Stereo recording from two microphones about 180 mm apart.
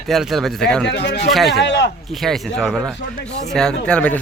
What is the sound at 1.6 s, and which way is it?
Speech, 80° left.